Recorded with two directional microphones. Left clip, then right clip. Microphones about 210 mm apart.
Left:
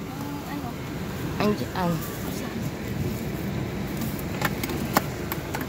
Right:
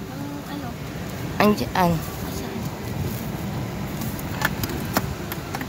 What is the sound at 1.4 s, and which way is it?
Speech, 30° right (ahead or behind).